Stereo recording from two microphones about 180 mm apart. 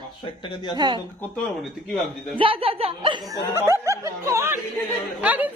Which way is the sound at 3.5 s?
15° right (ahead or behind).